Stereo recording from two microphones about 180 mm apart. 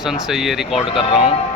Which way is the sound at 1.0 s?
30° left (ahead or behind).